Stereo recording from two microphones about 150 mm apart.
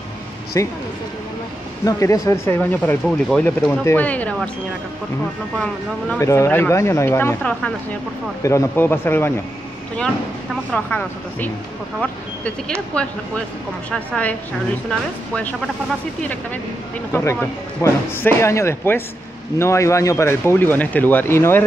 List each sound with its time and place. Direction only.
0.5 s speech: 20° left (ahead or behind)
1.9 s speech: 20° left (ahead or behind)
5.6 s speech: 5° left (ahead or behind)
6.2 s speech: 20° left (ahead or behind)
17.1 s speech: 20° left (ahead or behind)